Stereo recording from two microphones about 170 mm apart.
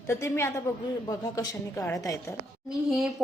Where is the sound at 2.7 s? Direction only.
Centre (ahead or behind).